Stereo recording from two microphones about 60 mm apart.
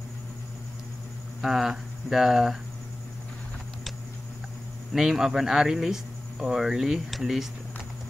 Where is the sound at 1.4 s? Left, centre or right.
Centre.